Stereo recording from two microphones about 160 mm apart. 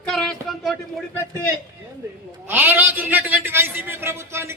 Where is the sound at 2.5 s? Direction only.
10° right (ahead or behind).